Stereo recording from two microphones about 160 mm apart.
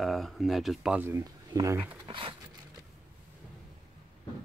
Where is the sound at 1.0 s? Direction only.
20° right (ahead or behind).